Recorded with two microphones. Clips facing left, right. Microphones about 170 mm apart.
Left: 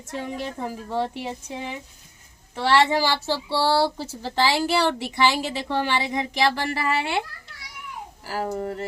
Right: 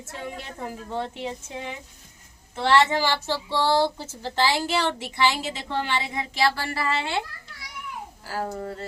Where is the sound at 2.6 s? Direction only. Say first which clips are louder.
Left 1 dB; 10° left (ahead or behind).